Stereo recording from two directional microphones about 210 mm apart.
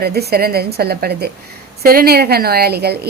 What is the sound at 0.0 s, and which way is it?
A woman's voice, 50° right (ahead or behind).